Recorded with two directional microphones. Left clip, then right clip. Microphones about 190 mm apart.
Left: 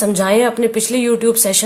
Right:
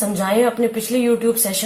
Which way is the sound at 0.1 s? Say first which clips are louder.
Left 2 dB; 55° left (ahead or behind).